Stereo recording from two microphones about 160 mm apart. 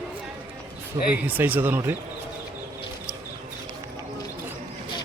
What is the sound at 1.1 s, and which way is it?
Speech, 10° right (ahead or behind).